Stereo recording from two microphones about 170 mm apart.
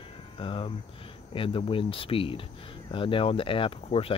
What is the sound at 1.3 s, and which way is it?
Speech, 30° left (ahead or behind).